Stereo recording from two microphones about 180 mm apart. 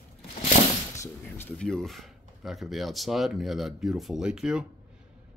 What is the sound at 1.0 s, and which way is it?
Speech, 10° left (ahead or behind).